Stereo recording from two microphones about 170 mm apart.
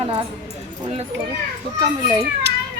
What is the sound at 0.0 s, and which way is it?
Speech, 40° right (ahead or behind).